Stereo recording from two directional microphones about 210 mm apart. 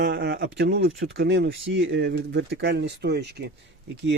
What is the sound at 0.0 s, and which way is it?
Speech, 50° right (ahead or behind).